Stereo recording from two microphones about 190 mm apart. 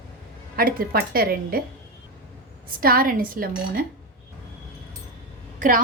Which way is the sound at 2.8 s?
50° right (ahead or behind).